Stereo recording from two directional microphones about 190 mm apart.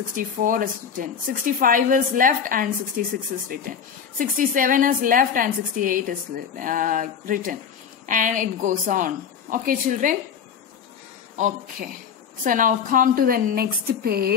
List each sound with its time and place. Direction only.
0.1 s speech: 45° right (ahead or behind)
11.3 s speech: 40° right (ahead or behind)